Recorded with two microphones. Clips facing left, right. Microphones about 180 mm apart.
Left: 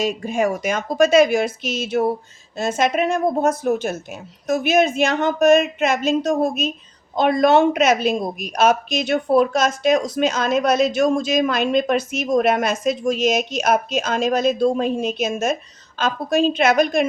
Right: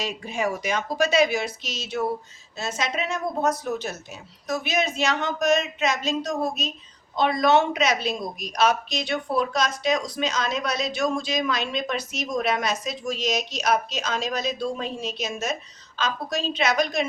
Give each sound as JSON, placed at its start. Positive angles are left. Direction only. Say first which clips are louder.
{"t": 0.0, "sound": "a woman's voice", "louder": "left 7 dB", "side_deg": 50}